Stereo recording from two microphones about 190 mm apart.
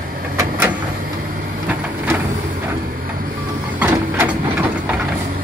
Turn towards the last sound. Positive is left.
turn(degrees=-10)  # may be behind; listen again after turning